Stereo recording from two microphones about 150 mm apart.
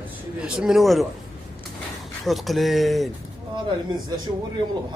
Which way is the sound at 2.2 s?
Centre (ahead or behind).